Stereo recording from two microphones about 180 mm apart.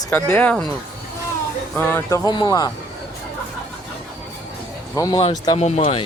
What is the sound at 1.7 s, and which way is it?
Speech, 10° left (ahead or behind).